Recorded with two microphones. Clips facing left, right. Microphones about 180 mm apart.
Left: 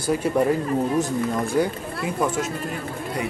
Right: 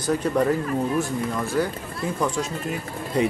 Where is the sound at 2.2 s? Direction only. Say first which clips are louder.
Left 1 dB; 5° left (ahead or behind).